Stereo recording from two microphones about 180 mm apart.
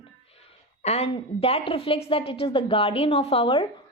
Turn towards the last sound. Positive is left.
turn(degrees=25)  # may be behind; listen again after turning